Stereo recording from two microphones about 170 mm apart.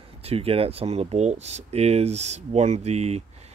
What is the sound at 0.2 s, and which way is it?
Speech, 35° right (ahead or behind).